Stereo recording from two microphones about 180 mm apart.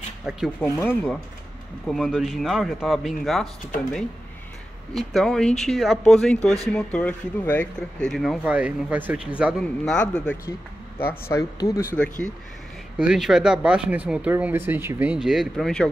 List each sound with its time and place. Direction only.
0.6 s speech: 10° left (ahead or behind)
1.9 s speech: centre (ahead or behind)
4.9 s speech: centre (ahead or behind)
11.2 s speech: 15° left (ahead or behind)
11.9 s speech: 5° left (ahead or behind); by 15.1 s 10° right (ahead or behind)
15.2 s speech: centre (ahead or behind)